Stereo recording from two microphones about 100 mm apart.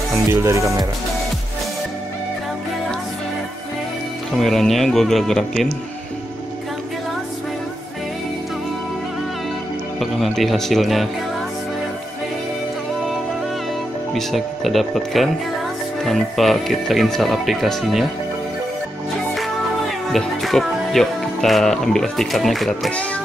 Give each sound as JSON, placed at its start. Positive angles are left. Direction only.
{"t": 0.3, "sound": "speech", "side_deg": -30}
{"t": 4.3, "sound": "speech", "side_deg": 5}
{"t": 9.9, "sound": "speech", "side_deg": 0}
{"t": 14.1, "sound": "speech", "side_deg": 0}
{"t": 20.1, "sound": "speech", "side_deg": 0}